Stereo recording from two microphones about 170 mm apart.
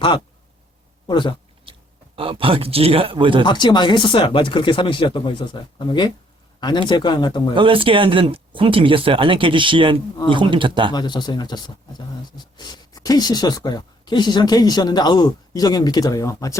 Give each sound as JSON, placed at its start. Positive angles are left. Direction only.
{"t": 1.0, "sound": "speech", "side_deg": 25}
{"t": 2.1, "sound": "speech", "side_deg": -30}
{"t": 3.4, "sound": "speech", "side_deg": 25}
{"t": 7.5, "sound": "speech", "side_deg": -30}
{"t": 10.9, "sound": "speech", "side_deg": 25}